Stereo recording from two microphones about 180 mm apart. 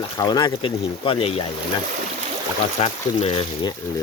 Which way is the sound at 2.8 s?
35° left (ahead or behind).